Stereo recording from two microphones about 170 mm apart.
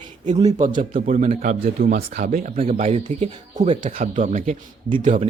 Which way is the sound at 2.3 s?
50° right (ahead or behind).